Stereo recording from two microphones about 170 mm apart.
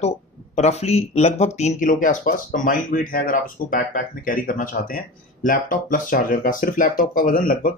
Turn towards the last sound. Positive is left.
turn(degrees=55)  # may be behind; listen again after turning